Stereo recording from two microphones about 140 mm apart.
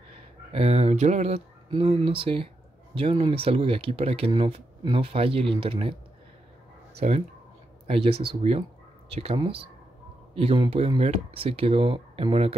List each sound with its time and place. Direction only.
0.5 s speech: 45° right (ahead or behind)
7.0 s speech: 50° right (ahead or behind)